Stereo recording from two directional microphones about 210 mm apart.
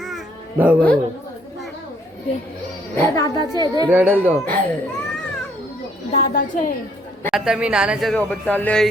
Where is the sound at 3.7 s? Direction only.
15° right (ahead or behind).